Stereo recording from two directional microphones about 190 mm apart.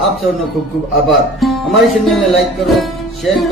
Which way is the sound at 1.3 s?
Centre (ahead or behind).